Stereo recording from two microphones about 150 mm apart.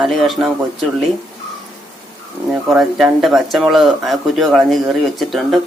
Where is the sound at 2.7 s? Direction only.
Centre (ahead or behind).